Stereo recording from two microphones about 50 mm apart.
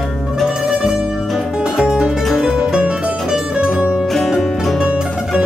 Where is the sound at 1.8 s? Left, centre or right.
Centre.